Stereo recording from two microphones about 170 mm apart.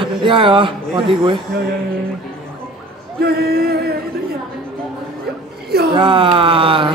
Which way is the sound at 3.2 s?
65° right (ahead or behind).